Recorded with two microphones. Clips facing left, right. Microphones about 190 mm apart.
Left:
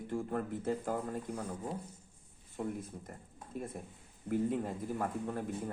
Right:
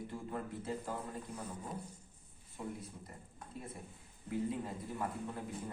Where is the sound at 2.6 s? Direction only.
50° left (ahead or behind).